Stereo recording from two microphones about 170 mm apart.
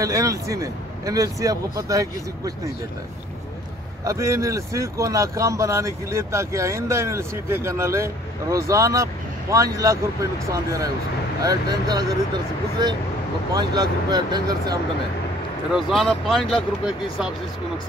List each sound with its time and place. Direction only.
0.0 s a man's voice: 20° right (ahead or behind)
4.0 s a man's voice: 20° right (ahead or behind)
13.6 s a man's voice: 25° right (ahead or behind)
15.7 s speech: centre (ahead or behind)